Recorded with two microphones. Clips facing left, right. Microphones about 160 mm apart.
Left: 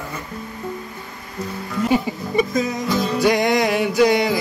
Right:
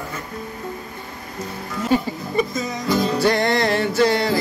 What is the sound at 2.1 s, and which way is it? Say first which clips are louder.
Music: left 2 dB; 15° left (ahead or behind).